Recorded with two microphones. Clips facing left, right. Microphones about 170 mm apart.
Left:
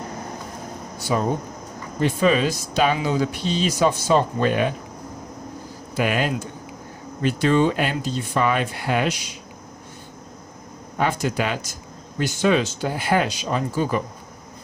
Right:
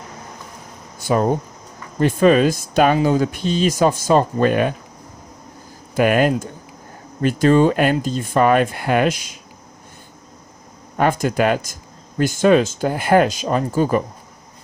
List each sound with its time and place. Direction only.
1.1 s speech: 55° right (ahead or behind)
6.0 s speech: 50° right (ahead or behind)
10.9 s speech: 50° right (ahead or behind)